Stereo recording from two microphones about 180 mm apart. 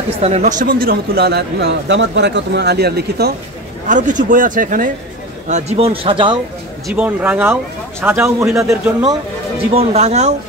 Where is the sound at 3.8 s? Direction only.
45° right (ahead or behind).